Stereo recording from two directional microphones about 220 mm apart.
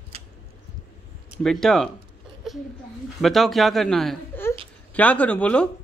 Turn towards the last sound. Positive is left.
turn(degrees=5)  # may be behind; listen again after turning